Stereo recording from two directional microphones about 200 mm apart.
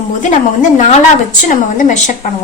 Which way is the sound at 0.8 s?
35° left (ahead or behind).